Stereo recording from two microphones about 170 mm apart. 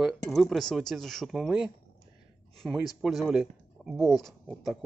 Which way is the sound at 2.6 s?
15° right (ahead or behind).